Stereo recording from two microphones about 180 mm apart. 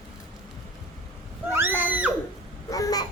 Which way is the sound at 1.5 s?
10° right (ahead or behind).